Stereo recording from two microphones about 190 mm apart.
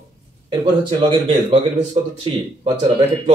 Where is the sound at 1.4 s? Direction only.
25° right (ahead or behind).